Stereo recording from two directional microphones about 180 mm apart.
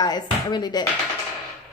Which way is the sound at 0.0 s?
20° left (ahead or behind).